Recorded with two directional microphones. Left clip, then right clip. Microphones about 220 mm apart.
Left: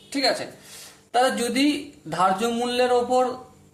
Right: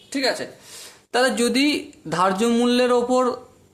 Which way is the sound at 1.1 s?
40° right (ahead or behind).